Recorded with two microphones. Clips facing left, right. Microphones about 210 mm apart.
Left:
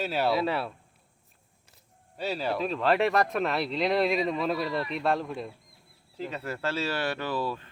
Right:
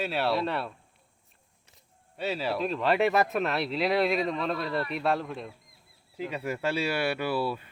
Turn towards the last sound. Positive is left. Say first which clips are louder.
# right 2 dB
turn(degrees=-10)  # may be behind; listen again after turning